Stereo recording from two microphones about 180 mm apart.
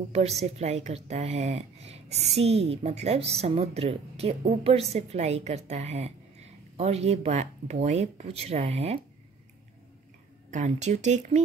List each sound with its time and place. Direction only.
0.1 s a woman's voice: 35° right (ahead or behind)
10.5 s a woman's voice: 40° right (ahead or behind)